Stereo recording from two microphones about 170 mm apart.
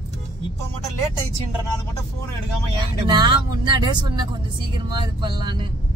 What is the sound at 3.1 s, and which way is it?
Speech, 25° right (ahead or behind).